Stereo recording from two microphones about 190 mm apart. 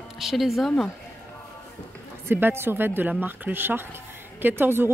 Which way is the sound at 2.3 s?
10° right (ahead or behind).